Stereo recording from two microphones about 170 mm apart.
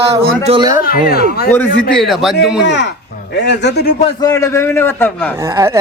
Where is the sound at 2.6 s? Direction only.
90° left.